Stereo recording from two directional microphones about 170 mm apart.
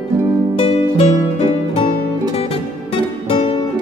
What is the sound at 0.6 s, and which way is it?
Music, 35° left (ahead or behind).